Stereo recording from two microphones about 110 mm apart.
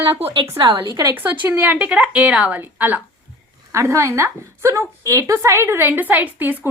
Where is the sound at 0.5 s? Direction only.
45° right (ahead or behind).